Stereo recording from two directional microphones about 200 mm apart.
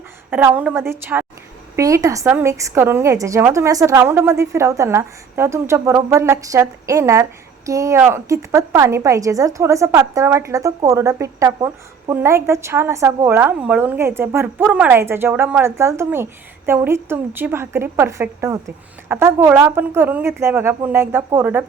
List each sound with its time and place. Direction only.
0.3 s a woman's voice: 10° right (ahead or behind)